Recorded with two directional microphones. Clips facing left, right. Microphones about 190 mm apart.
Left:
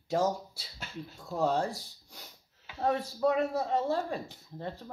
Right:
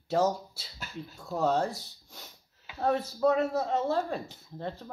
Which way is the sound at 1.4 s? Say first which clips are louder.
Right 2 dB; 10° left (ahead or behind).